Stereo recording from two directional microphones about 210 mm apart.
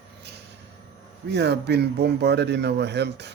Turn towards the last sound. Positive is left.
turn(degrees=-55)  # may be behind; listen again after turning